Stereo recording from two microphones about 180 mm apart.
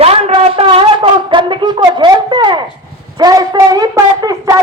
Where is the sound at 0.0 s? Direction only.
35° right (ahead or behind).